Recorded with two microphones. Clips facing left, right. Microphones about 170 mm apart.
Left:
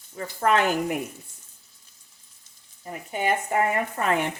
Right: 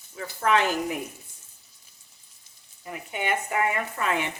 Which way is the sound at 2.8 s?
40° left (ahead or behind).